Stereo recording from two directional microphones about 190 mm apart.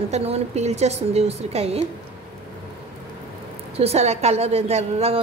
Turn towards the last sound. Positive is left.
turn(degrees=-35)  # may be behind; listen again after turning